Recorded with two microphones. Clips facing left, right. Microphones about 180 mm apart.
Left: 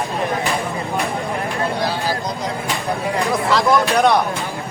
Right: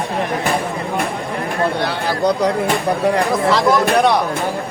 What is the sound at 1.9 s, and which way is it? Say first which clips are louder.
Speech: right 5 dB; 70° right (ahead or behind).